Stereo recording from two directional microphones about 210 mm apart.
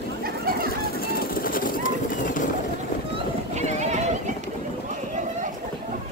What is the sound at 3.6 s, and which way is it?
Neigh, 35° right (ahead or behind).